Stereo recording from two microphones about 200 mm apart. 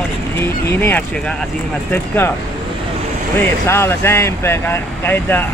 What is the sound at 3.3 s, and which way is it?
Speech, 10° left (ahead or behind).